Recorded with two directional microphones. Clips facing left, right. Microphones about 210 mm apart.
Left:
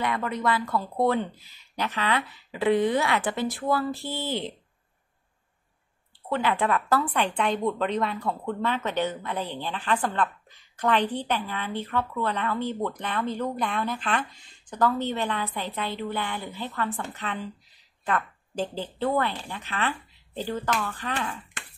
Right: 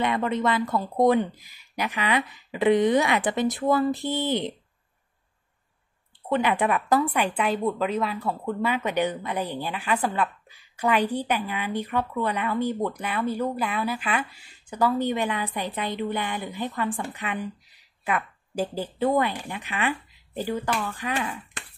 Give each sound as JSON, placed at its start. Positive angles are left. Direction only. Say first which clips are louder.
{"t": 0.0, "sound": "speech", "louder": "right 3 dB", "side_deg": -20}
{"t": 6.2, "sound": "a woman's voice", "louder": "right 2 dB", "side_deg": -15}